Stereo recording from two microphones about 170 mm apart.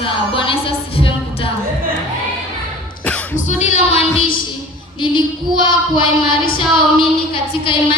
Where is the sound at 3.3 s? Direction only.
45° left (ahead or behind).